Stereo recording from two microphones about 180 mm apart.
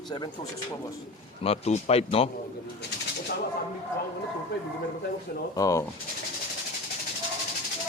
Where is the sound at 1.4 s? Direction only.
35° left (ahead or behind).